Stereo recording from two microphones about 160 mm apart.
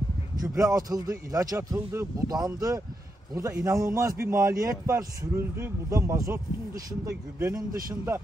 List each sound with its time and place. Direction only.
0.4 s a man's voice: 20° right (ahead or behind)